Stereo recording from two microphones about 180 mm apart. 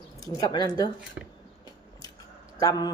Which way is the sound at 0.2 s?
20° left (ahead or behind).